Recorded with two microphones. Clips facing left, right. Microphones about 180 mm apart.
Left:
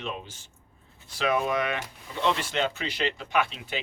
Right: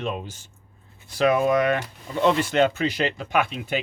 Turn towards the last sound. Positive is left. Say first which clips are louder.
# right 4 dB
turn(degrees=-50)  # may be behind; listen again after turning